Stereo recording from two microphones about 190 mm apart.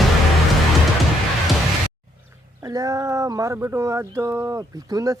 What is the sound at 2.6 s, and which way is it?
Speech, 20° right (ahead or behind).